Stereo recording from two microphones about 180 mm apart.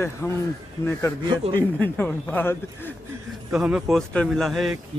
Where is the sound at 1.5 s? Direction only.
10° left (ahead or behind).